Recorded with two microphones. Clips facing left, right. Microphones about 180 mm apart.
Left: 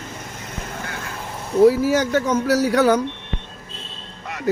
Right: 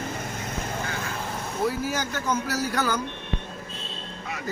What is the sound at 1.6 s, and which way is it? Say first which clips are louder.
Speech: left 13 dB; 75° left (ahead or behind).